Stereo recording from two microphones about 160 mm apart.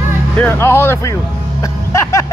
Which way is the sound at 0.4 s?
15° left (ahead or behind).